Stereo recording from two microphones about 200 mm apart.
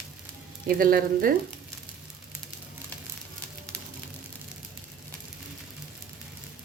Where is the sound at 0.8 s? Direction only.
45° right (ahead or behind).